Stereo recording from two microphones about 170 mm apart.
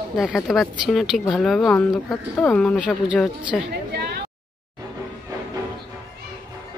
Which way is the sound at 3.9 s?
75° right (ahead or behind).